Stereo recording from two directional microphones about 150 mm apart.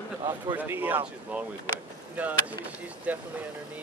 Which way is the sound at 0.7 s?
15° right (ahead or behind).